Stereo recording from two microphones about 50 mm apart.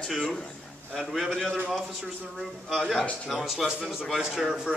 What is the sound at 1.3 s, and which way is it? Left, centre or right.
Speech, centre.